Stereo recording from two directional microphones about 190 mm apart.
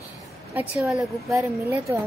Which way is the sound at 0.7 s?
5° right (ahead or behind).